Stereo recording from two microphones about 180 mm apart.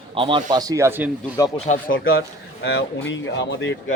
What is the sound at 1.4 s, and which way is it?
Speech, 20° left (ahead or behind).